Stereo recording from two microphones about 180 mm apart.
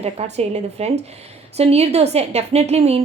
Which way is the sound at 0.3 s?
35° right (ahead or behind).